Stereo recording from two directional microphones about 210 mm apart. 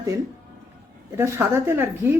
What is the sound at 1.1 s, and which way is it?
A woman's voice, 10° right (ahead or behind).